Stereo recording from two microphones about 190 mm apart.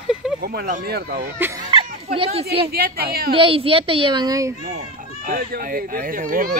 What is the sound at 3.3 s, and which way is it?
A child's voice, 30° right (ahead or behind).